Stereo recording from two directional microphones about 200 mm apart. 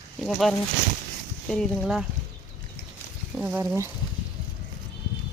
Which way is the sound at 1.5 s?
Centre (ahead or behind).